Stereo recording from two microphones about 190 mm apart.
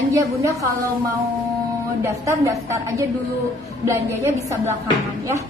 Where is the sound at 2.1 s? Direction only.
15° right (ahead or behind).